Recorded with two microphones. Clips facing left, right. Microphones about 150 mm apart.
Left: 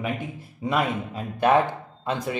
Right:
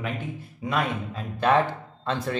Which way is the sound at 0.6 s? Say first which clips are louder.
Left 2 dB; 15° left (ahead or behind).